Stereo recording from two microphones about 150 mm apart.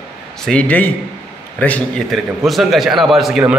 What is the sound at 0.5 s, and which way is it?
A man's voice, 10° left (ahead or behind).